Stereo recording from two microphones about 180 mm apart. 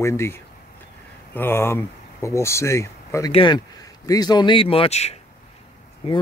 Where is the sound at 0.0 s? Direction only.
15° left (ahead or behind).